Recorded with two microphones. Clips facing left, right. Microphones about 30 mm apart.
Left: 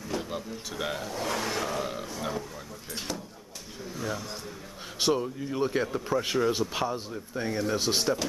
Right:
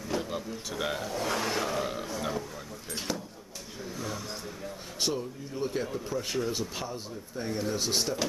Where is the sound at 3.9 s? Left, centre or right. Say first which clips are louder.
Left 4 dB; centre.